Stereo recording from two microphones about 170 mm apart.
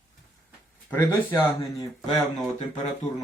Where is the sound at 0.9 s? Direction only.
10° left (ahead or behind).